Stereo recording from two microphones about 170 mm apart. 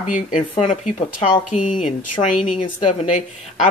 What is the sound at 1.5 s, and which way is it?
Speech, 45° left (ahead or behind).